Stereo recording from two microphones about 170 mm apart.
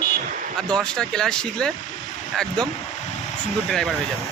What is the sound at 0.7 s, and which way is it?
Speech, 5° left (ahead or behind).